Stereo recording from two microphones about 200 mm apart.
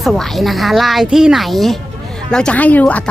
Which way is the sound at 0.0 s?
Centre (ahead or behind).